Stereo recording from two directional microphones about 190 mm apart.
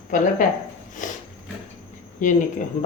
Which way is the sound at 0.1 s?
45° left (ahead or behind).